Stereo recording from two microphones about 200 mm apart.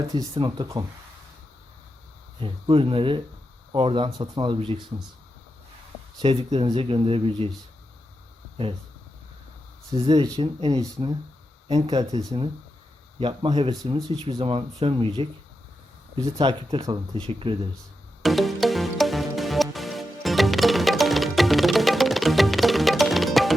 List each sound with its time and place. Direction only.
0.1 s speech: 20° right (ahead or behind)
2.4 s speech: 25° right (ahead or behind)
6.2 s speech: 25° right (ahead or behind)
9.9 s speech: 25° right (ahead or behind)
18.2 s music: centre (ahead or behind)